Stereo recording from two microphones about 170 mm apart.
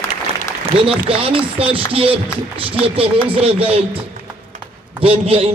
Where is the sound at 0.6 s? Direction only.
35° right (ahead or behind).